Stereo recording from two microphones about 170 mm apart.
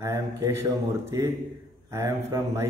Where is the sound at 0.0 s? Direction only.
15° right (ahead or behind).